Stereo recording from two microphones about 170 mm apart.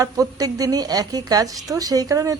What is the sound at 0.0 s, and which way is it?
Speech, 20° right (ahead or behind).